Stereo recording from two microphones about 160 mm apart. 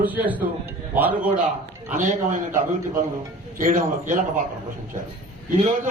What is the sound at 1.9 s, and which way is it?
A man's voice, 50° right (ahead or behind).